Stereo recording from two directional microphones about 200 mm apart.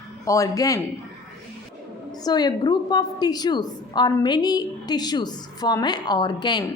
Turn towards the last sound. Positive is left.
turn(degrees=20)  # may be behind; listen again after turning